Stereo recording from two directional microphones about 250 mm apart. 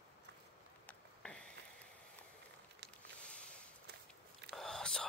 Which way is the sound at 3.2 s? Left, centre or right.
Centre.